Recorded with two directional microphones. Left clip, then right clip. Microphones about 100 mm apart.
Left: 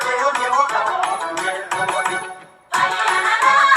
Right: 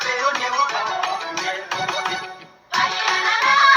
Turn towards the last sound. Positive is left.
turn(degrees=35)  # may be behind; listen again after turning